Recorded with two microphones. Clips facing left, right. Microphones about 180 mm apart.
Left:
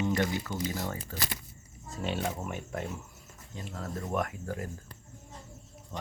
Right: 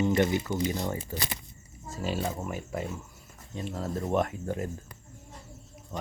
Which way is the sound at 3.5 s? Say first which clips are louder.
Right 5 dB; 25° right (ahead or behind).